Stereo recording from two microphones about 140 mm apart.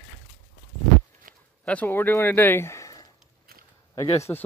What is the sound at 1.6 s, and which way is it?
Speech, 10° left (ahead or behind).